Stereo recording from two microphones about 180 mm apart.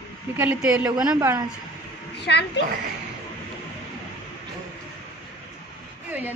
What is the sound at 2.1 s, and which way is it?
Speech, 70° left (ahead or behind).